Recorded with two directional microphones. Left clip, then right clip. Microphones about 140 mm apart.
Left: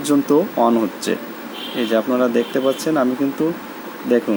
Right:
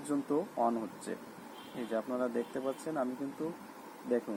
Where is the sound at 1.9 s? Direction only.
25° left (ahead or behind).